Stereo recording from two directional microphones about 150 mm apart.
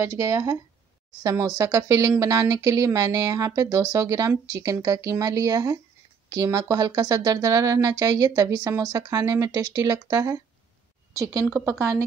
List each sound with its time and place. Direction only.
0.0 s speech: 20° right (ahead or behind)